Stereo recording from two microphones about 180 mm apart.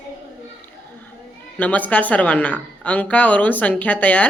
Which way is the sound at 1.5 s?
10° left (ahead or behind).